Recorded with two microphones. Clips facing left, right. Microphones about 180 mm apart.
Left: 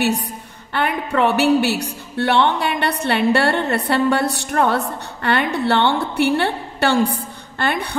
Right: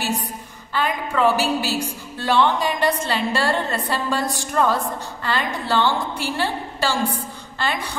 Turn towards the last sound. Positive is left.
turn(degrees=60)  # may be behind; listen again after turning